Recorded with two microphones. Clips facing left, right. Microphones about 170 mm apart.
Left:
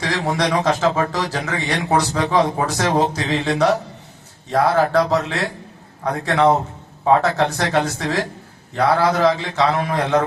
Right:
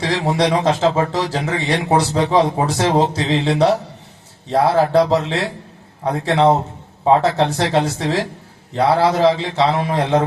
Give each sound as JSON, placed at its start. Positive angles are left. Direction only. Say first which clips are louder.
{"t": 0.0, "sound": "a man's voice", "louder": "right 3 dB", "side_deg": -25}